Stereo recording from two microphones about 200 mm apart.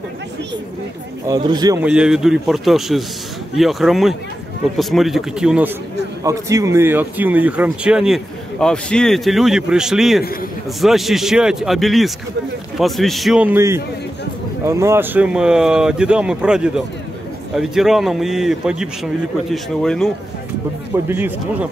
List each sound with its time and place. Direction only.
1.2 s speech: 20° right (ahead or behind)
1.8 s speech: 5° right (ahead or behind)
6.2 s speech: 15° right (ahead or behind); by 20.1 s centre (ahead or behind)
20.9 s speech: 10° right (ahead or behind)